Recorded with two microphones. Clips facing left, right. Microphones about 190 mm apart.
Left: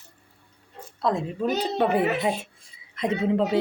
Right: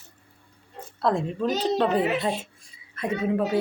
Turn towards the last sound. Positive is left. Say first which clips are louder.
# left 2 dB
turn(degrees=20)  # may be behind; listen again after turning